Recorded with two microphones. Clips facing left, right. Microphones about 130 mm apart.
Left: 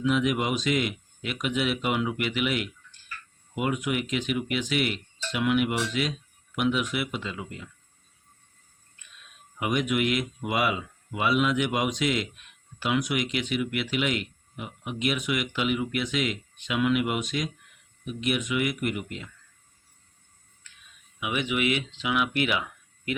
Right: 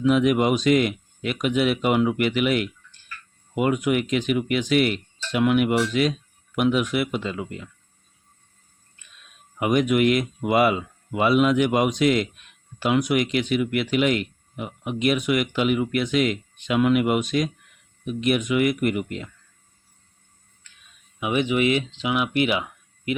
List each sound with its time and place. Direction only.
0.0 s speech: 50° right (ahead or behind)
9.6 s speech: 45° right (ahead or behind)
21.2 s speech: 35° right (ahead or behind)